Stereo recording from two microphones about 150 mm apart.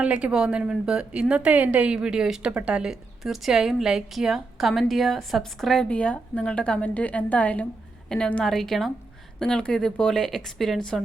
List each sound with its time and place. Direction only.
0.0 s a woman's voice: 10° right (ahead or behind)